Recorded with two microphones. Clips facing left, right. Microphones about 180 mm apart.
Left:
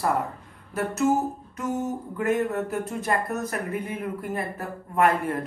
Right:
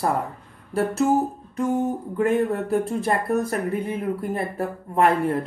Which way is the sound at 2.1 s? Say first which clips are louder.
Right 3 dB; 30° right (ahead or behind).